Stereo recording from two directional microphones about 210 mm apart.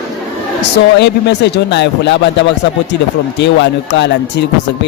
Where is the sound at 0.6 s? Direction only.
55° left (ahead or behind).